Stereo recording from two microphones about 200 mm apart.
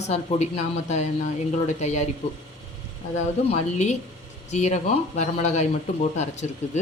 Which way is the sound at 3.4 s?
35° left (ahead or behind).